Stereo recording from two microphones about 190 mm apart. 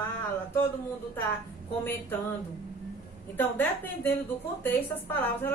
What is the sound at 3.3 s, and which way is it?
Speech, 10° left (ahead or behind).